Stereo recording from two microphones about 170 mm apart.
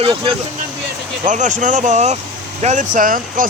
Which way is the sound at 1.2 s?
45° right (ahead or behind).